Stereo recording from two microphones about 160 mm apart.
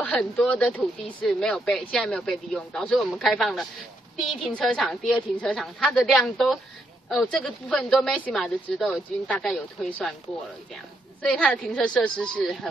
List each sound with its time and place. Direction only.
0.0 s speech: 5° left (ahead or behind)
11.2 s speech: 5° left (ahead or behind)